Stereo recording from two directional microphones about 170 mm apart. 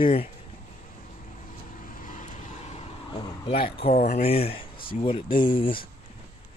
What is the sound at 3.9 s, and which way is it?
Speech, 60° left (ahead or behind).